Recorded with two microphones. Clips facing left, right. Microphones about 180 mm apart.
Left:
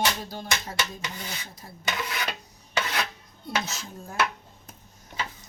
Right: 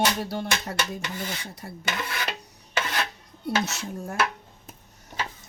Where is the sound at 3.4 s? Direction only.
70° right (ahead or behind).